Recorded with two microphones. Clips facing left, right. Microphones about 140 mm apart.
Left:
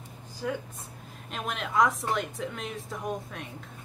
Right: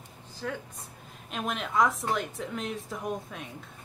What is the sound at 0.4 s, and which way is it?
Speech, 5° left (ahead or behind).